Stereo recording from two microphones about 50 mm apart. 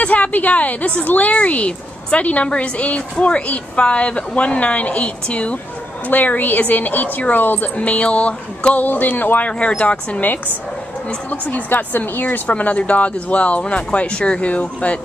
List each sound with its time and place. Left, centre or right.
0.0 s a woman's voice: left
7.7 s a woman's voice: left
9.5 s a woman's voice: left
11.2 s a woman's voice: left